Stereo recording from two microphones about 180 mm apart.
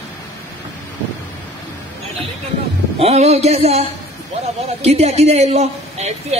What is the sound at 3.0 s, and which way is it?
A woman's voice, 35° right (ahead or behind).